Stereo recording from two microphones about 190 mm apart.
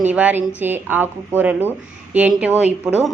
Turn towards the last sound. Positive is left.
turn(degrees=-5)  # may be behind; listen again after turning